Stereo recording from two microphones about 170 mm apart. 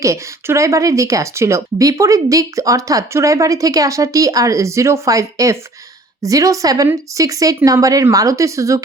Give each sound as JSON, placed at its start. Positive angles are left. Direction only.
{"t": 0.0, "sound": "speech", "side_deg": -20}